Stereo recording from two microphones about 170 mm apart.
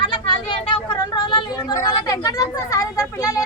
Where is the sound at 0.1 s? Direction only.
30° left (ahead or behind).